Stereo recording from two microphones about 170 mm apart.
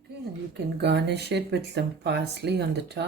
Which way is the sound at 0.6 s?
75° right (ahead or behind).